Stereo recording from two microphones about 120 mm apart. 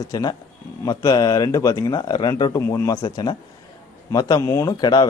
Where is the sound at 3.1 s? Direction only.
40° left (ahead or behind).